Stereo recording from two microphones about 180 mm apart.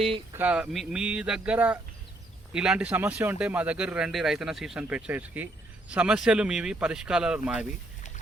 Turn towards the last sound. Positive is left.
turn(degrees=-5)  # may be behind; listen again after turning